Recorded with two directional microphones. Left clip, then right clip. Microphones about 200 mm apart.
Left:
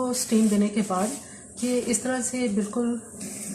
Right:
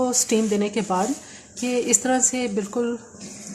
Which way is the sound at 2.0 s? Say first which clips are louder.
Right 6 dB; 50° right (ahead or behind).